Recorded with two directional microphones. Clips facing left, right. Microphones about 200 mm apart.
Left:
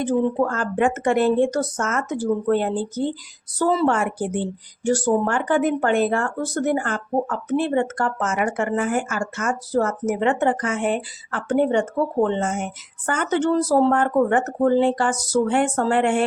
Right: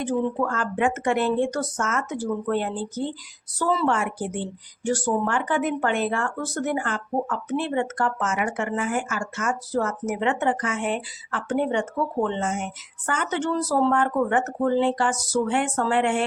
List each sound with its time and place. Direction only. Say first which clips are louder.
0.0 s speech: left 4 dB; 40° left (ahead or behind)